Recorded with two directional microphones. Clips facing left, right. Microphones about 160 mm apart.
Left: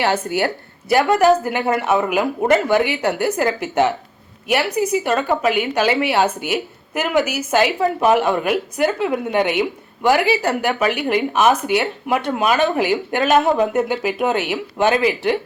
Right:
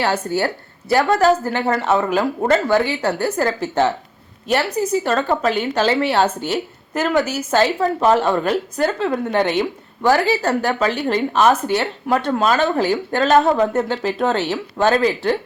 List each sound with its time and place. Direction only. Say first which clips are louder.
0.3 s a woman's voice: even; 15° left (ahead or behind)